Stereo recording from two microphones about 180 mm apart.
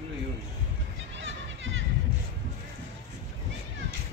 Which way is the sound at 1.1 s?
90° right.